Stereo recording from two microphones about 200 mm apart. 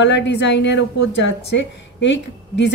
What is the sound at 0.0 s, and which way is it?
A woman's voice, 60° left (ahead or behind).